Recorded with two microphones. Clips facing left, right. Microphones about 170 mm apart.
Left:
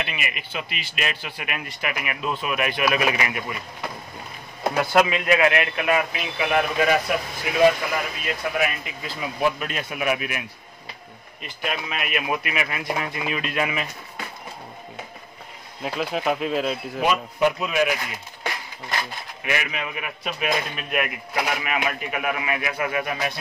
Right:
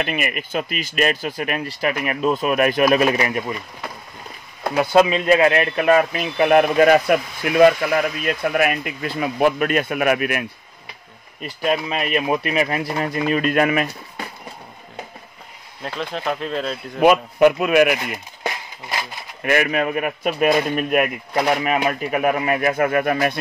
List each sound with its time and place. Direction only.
0.0 s speech: 45° right (ahead or behind)
4.7 s speech: 25° right (ahead or behind); by 10.4 s 55° right (ahead or behind)
11.4 s a man's voice: 35° right (ahead or behind); by 13.8 s 50° right (ahead or behind)
15.8 s speech: 5° left (ahead or behind)
17.0 s speech: 60° right (ahead or behind)
19.4 s a man's voice: 50° right (ahead or behind)